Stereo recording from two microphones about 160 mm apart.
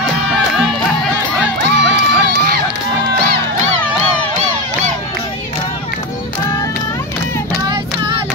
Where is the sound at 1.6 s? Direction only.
90° right.